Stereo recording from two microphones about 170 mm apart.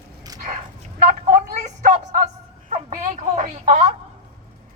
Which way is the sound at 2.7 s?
40° right (ahead or behind).